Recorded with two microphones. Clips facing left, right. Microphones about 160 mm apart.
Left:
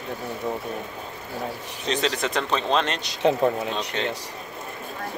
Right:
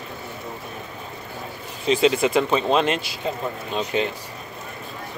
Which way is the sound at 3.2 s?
80° left.